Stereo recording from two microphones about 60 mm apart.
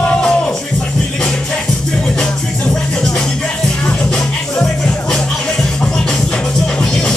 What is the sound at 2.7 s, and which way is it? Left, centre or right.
Music, centre.